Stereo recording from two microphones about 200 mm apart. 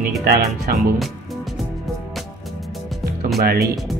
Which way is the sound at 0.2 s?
50° right (ahead or behind).